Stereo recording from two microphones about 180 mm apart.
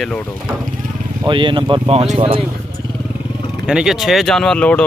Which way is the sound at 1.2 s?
25° right (ahead or behind).